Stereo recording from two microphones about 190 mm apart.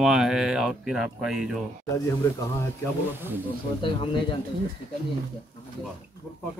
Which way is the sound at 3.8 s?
25° left (ahead or behind).